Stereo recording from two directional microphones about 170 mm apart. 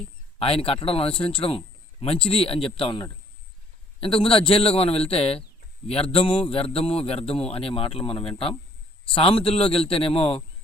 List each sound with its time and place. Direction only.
0.3 s speech: 35° left (ahead or behind)